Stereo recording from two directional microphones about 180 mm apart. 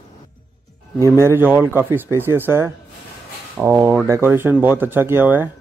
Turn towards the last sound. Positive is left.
turn(degrees=-10)  # may be behind; listen again after turning